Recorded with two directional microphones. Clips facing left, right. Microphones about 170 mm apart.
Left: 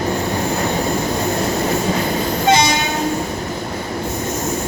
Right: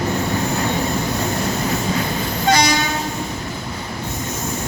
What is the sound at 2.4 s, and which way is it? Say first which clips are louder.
Train: left 1 dB; 25° left (ahead or behind).